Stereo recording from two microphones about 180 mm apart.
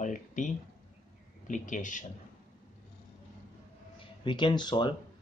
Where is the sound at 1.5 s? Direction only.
45° left (ahead or behind).